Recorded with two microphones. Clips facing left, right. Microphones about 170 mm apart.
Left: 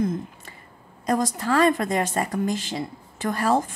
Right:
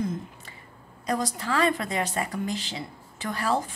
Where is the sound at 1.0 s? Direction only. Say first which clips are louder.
Left 5 dB; 45° left (ahead or behind).